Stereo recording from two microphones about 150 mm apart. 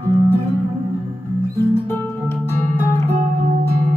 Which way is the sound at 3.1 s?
50° right (ahead or behind).